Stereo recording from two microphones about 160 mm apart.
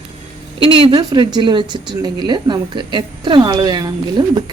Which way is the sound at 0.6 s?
35° right (ahead or behind).